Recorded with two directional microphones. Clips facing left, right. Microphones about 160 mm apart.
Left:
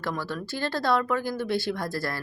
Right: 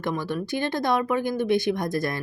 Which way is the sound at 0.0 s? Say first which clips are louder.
Right 4 dB; 20° right (ahead or behind).